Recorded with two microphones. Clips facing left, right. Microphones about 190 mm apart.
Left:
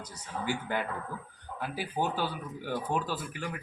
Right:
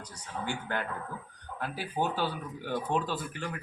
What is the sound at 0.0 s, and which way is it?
Speech, 10° left (ahead or behind).